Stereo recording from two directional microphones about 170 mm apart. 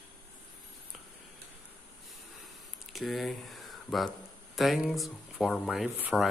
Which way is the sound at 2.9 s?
Centre (ahead or behind).